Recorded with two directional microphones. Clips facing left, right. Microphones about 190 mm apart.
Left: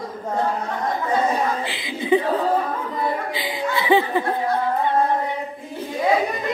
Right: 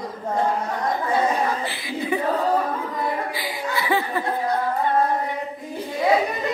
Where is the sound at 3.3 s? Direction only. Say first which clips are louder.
Left 3 dB; 20° left (ahead or behind).